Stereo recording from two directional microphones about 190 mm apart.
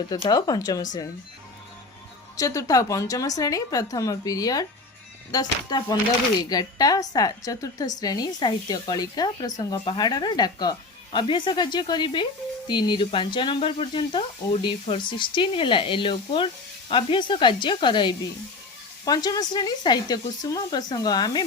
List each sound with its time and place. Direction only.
0.1 s a woman's voice: 20° left (ahead or behind)
2.3 s a woman's voice: 15° left (ahead or behind)